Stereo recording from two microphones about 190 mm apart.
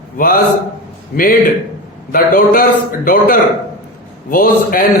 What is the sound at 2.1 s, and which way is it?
A man's voice, 50° left (ahead or behind).